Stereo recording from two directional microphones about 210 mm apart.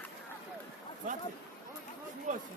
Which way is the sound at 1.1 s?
40° right (ahead or behind).